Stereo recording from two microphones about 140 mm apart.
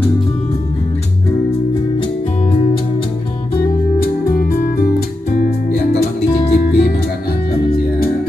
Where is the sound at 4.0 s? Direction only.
90° left.